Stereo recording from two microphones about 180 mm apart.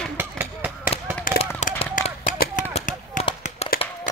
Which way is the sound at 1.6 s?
40° left (ahead or behind).